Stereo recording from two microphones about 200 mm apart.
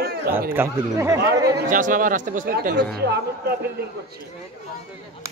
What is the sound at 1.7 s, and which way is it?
A man's voice, 40° right (ahead or behind).